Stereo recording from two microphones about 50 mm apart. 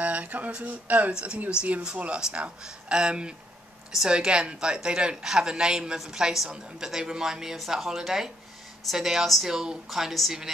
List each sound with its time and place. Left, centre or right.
0.0 s a woman's voice: right; by 10.3 s centre